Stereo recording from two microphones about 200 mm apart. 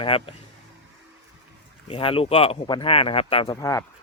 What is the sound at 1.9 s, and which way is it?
Speech, 25° left (ahead or behind).